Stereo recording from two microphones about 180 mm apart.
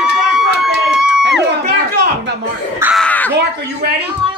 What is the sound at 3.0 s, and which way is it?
Crow, 10° left (ahead or behind).